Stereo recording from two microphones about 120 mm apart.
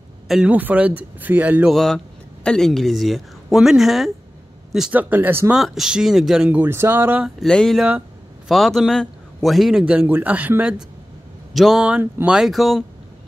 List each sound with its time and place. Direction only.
0.3 s speech: 10° right (ahead or behind)
1.7 s a man's voice: centre (ahead or behind)
5.1 s speech: 15° right (ahead or behind)
5.5 s speech: 5° right (ahead or behind)
7.2 s a man's voice: centre (ahead or behind)
11.5 s speech: centre (ahead or behind)
12.4 s a man's voice: centre (ahead or behind)